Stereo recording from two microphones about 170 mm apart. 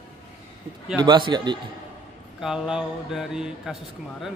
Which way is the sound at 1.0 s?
25° right (ahead or behind).